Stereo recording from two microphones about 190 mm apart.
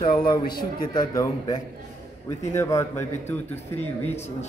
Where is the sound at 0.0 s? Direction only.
25° left (ahead or behind).